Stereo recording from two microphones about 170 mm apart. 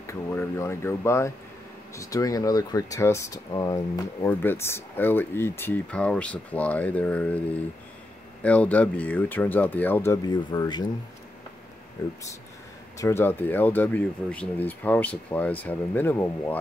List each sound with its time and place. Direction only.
0.0 s speech: 15° left (ahead or behind)
8.4 s speech: 10° left (ahead or behind); by 10.9 s 25° left (ahead or behind)
13.0 s speech: 15° left (ahead or behind)